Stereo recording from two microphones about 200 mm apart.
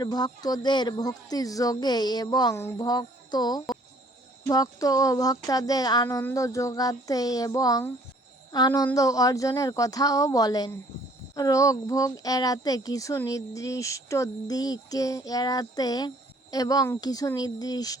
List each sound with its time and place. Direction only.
0.0 s speech: 20° left (ahead or behind)